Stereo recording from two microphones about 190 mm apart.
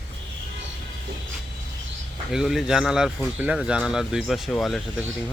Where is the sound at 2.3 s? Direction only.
Centre (ahead or behind).